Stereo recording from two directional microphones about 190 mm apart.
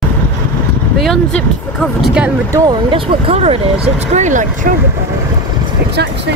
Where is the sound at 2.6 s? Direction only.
30° right (ahead or behind).